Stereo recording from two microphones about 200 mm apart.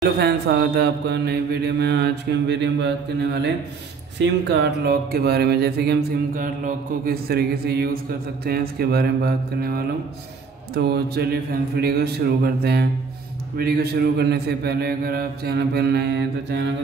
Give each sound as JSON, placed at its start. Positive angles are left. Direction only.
{"t": 0.2, "sound": "mantra", "side_deg": -55}
{"t": 4.2, "sound": "speech", "side_deg": -60}